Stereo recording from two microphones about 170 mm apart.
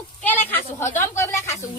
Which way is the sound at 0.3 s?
10° left (ahead or behind).